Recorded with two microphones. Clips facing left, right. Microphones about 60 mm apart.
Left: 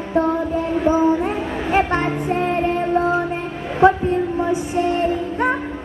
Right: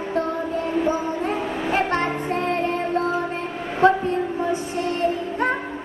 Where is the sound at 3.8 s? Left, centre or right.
Centre.